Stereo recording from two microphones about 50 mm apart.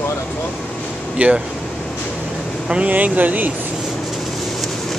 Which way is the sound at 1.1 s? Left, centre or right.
Right.